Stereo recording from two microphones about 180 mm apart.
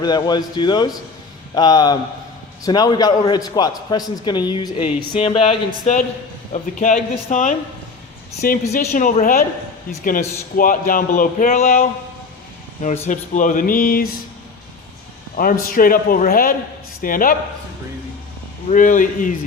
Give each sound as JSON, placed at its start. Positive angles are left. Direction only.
{"t": 0.0, "sound": "a man's voice", "side_deg": 25}
{"t": 8.7, "sound": "speech", "side_deg": 50}
{"t": 15.4, "sound": "speech", "side_deg": 50}
{"t": 18.7, "sound": "speech", "side_deg": 45}